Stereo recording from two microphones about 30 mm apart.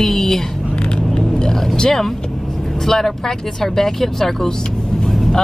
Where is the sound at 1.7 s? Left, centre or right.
Centre.